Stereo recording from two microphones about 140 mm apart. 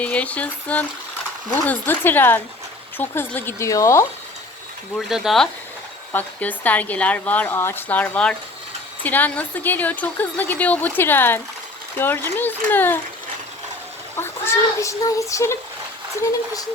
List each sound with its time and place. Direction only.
0.0 s a woman's voice: 10° left (ahead or behind)
4.9 s speech: centre (ahead or behind)
6.1 s a woman's voice: 10° left (ahead or behind)
14.2 s a child's voice: 20° left (ahead or behind)